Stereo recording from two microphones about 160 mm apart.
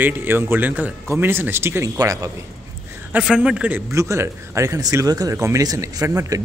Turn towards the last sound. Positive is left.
turn(degrees=-20)  # may be behind; listen again after turning